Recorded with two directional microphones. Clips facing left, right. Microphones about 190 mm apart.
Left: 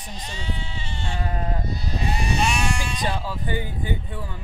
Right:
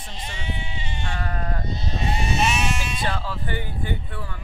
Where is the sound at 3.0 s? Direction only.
15° left (ahead or behind).